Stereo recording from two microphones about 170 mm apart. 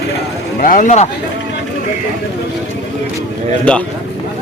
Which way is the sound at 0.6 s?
50° left (ahead or behind).